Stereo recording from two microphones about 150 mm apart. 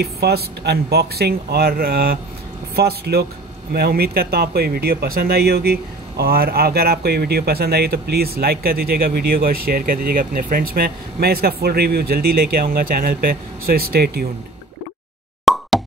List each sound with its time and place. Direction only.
0.0 s speech: 90° right
15.5 s plop: centre (ahead or behind)